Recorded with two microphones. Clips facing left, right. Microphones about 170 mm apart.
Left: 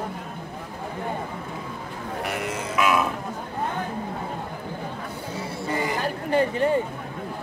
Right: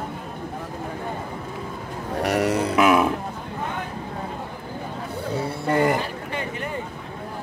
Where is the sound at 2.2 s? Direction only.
40° right (ahead or behind).